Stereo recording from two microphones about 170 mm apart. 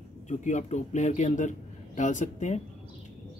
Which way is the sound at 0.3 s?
45° left (ahead or behind).